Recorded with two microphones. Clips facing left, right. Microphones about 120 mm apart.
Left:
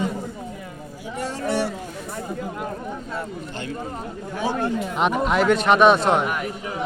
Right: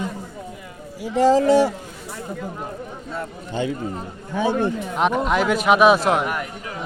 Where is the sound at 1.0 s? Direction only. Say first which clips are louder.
Right 13 dB; 90° right.